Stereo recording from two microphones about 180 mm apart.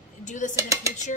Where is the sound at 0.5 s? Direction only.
15° right (ahead or behind).